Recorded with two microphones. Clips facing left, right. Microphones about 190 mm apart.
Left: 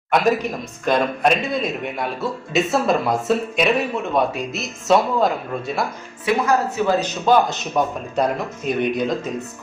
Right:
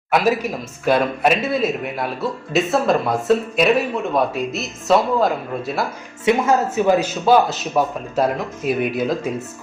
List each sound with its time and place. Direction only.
0.1 s speech: 5° right (ahead or behind)
6.2 s speech: 25° right (ahead or behind); by 9.3 s 5° right (ahead or behind)